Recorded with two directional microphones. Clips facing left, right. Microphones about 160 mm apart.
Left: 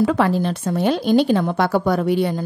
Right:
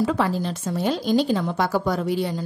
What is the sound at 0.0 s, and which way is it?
Speech, 65° left (ahead or behind).